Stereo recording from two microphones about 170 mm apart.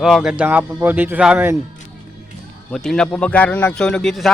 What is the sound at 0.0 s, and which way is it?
A man's voice, centre (ahead or behind).